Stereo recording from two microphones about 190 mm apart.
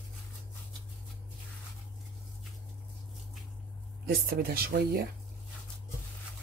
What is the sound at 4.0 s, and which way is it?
Speech, 55° right (ahead or behind).